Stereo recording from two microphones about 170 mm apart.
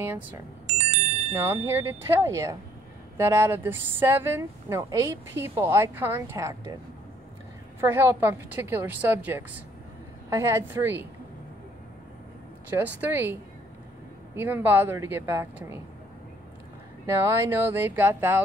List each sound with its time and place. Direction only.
0.7 s music: 40° right (ahead or behind)
1.5 s speech: 15° right (ahead or behind)
7.8 s speech: 15° right (ahead or behind)
12.6 s speech: 10° right (ahead or behind)
17.0 s speech: 15° right (ahead or behind)